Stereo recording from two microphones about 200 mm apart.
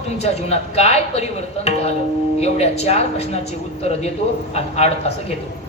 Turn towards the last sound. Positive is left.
turn(degrees=30)  # may be behind; listen again after turning